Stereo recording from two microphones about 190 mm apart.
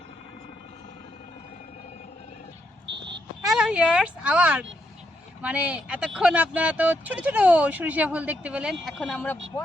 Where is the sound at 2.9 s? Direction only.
65° right (ahead or behind).